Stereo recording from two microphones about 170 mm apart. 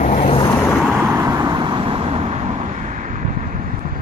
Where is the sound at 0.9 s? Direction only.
15° right (ahead or behind); by 3.5 s 50° right (ahead or behind).